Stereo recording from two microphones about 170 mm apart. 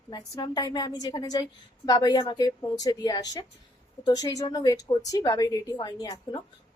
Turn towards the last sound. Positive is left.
turn(degrees=20)  # may be behind; listen again after turning